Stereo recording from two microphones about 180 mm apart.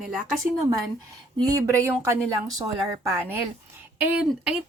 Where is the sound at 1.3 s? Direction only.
20° right (ahead or behind).